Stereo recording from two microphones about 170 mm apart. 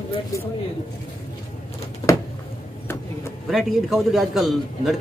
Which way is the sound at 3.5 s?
Centre (ahead or behind).